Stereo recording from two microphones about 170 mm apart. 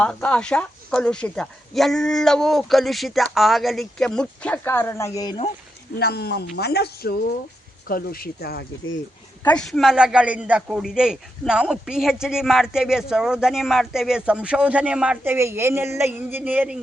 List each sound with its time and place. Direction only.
0.0 s a man's voice: 5° left (ahead or behind)
6.0 s speech: 70° left (ahead or behind)
9.4 s a man's voice: 5° left (ahead or behind)